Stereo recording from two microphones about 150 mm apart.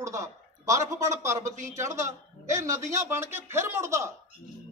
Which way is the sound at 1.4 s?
55° right (ahead or behind).